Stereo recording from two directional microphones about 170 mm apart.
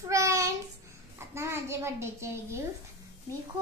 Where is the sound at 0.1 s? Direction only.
20° right (ahead or behind).